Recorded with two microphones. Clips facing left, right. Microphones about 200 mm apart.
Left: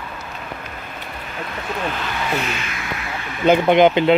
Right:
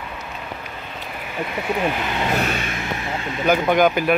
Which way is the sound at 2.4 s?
45° right (ahead or behind).